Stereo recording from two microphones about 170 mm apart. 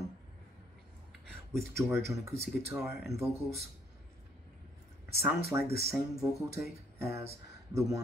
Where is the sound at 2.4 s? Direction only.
5° right (ahead or behind).